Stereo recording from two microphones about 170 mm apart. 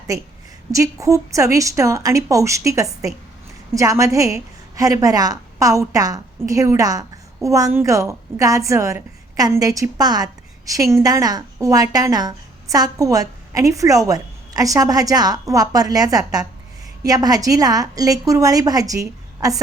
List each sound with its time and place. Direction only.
0.7 s a woman's voice: 20° right (ahead or behind)